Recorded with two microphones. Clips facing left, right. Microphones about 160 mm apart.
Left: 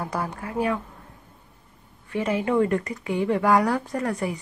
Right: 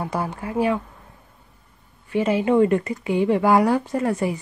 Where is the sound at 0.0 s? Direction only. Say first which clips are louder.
Right 3 dB; 25° right (ahead or behind).